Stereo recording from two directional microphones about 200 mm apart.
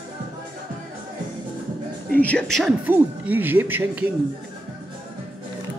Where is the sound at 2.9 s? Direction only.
10° right (ahead or behind).